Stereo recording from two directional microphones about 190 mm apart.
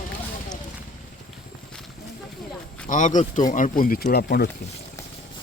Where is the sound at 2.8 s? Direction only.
40° left (ahead or behind).